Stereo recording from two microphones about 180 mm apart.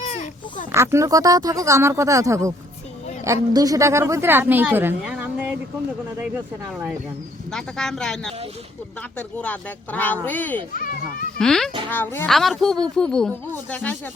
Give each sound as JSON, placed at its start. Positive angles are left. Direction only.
{"t": 0.0, "sound": "a sound", "side_deg": 45}
{"t": 0.7, "sound": "a woman's voice", "side_deg": -15}
{"t": 7.5, "sound": "a woman's voice", "side_deg": 5}
{"t": 10.8, "sound": "a child's voice", "side_deg": 50}
{"t": 11.3, "sound": "a woman's voice", "side_deg": 5}